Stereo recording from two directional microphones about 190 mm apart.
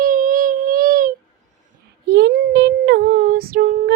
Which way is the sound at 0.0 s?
45° right (ahead or behind).